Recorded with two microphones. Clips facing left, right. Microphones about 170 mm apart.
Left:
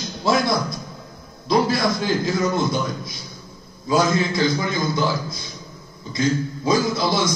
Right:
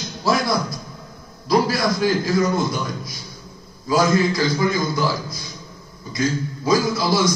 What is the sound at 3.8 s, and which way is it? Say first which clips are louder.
A man's voice: right 2 dB; 25° left (ahead or behind).